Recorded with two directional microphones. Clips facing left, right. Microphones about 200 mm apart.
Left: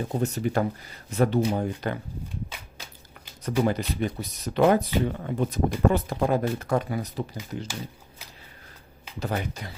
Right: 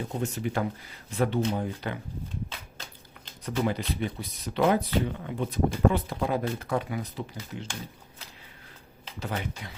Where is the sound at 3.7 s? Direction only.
45° left (ahead or behind).